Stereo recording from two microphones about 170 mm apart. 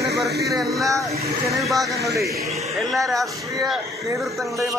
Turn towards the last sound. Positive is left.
turn(degrees=0)  # may be behind; listen again after turning